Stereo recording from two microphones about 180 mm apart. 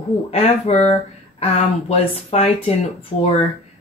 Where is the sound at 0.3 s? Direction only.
35° left (ahead or behind).